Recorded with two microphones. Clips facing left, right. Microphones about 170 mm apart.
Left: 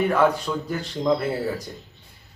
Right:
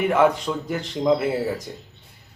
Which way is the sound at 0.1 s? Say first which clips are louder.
Right 2 dB; 20° right (ahead or behind).